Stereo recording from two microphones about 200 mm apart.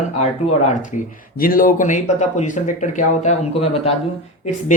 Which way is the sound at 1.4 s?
45° left (ahead or behind).